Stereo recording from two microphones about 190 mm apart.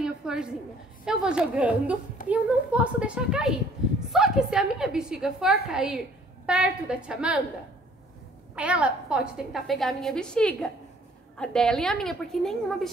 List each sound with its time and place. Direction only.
0.0 s a sound: 5° right (ahead or behind)
1.0 s a woman's voice: 5° right (ahead or behind)
8.5 s a woman's voice: 5° right (ahead or behind)